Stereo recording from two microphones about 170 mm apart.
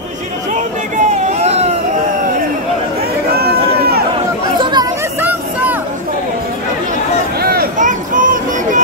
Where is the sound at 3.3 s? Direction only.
65° right (ahead or behind).